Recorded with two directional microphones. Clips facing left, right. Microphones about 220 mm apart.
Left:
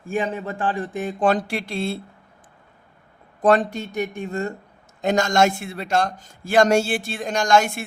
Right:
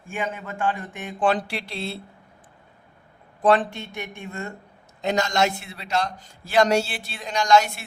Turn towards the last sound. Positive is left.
turn(degrees=50)  # may be behind; listen again after turning